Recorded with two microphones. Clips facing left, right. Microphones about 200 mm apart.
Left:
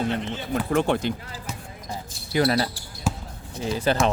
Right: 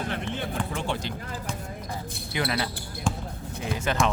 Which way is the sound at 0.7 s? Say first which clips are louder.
Left 9 dB; 55° left (ahead or behind).